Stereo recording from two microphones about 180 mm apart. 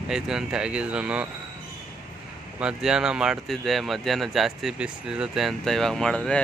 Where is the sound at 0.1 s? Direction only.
5° right (ahead or behind).